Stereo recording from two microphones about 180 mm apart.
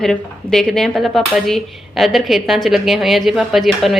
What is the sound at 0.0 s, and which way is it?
Speech, centre (ahead or behind).